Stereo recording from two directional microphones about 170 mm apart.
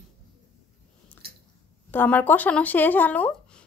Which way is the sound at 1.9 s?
10° left (ahead or behind).